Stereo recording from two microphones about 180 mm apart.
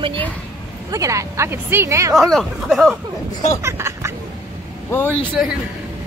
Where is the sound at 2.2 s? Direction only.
Centre (ahead or behind).